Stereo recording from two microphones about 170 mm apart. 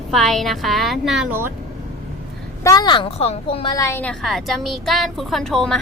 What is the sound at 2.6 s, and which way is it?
A woman's voice, 25° left (ahead or behind).